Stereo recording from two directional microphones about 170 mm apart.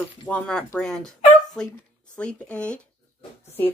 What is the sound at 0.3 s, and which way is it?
Speech, 5° left (ahead or behind).